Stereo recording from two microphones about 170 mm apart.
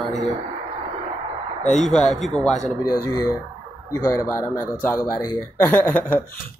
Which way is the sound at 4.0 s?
15° left (ahead or behind).